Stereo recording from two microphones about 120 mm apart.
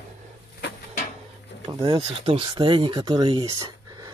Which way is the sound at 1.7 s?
45° right (ahead or behind).